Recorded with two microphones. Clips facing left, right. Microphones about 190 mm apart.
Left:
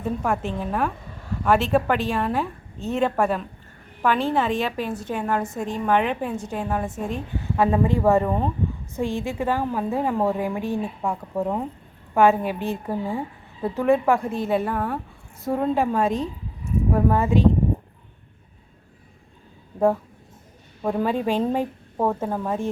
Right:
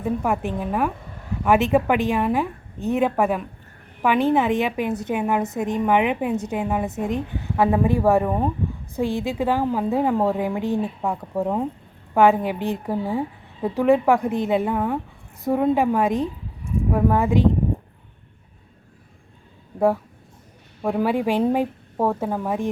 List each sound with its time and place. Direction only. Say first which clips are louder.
0.0 s a woman's voice: right 2 dB; 15° right (ahead or behind)
11.0 s a woman's voice: right 1 dB; 5° right (ahead or behind)
20.8 s a woman's voice: right 2 dB; 10° right (ahead or behind)